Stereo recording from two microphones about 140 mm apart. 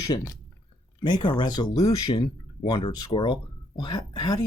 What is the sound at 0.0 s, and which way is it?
Speech, 25° left (ahead or behind).